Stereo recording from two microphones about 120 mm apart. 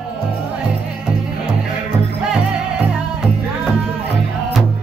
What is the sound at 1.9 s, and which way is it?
Music, 10° right (ahead or behind).